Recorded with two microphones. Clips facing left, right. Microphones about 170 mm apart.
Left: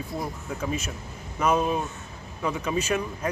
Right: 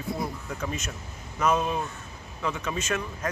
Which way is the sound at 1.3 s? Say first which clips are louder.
Left 2 dB; 10° left (ahead or behind).